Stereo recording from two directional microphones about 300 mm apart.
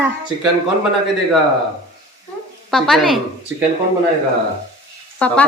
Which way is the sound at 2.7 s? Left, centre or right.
Centre.